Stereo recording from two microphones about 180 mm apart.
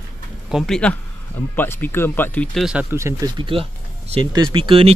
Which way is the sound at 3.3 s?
30° right (ahead or behind).